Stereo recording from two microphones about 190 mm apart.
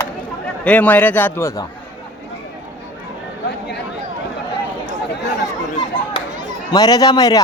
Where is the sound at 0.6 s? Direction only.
10° left (ahead or behind).